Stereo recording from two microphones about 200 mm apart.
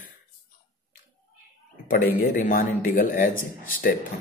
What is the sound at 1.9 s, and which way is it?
A man's voice, 45° left (ahead or behind).